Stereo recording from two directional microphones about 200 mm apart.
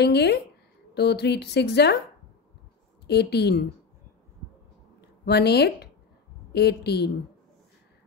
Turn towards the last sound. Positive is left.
turn(degrees=55)  # may be behind; listen again after turning